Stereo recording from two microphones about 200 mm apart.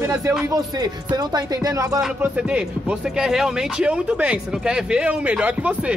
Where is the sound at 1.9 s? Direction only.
5° right (ahead or behind).